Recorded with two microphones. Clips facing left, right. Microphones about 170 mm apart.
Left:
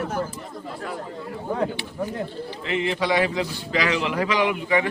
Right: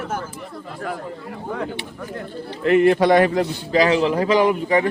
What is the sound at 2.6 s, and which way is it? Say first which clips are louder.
A man's voice: right 10 dB; 50° right (ahead or behind).